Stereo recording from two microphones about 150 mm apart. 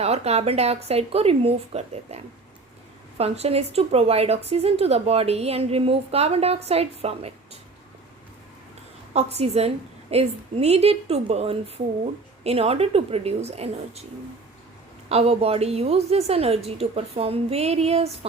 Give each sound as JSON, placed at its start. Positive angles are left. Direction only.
{"t": 0.0, "sound": "a woman's voice", "side_deg": -45}
{"t": 9.1, "sound": "a woman's voice", "side_deg": -45}
{"t": 15.1, "sound": "a woman's voice", "side_deg": -40}